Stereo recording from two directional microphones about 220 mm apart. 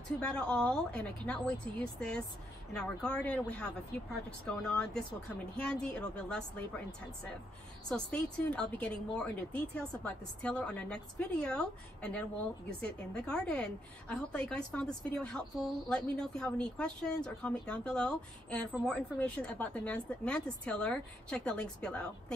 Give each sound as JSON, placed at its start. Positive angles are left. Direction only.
{"t": 0.2, "sound": "a woman's voice", "side_deg": 5}
{"t": 7.9, "sound": "a woman's voice", "side_deg": 5}